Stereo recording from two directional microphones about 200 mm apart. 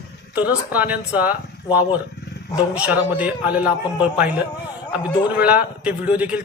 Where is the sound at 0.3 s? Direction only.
10° right (ahead or behind).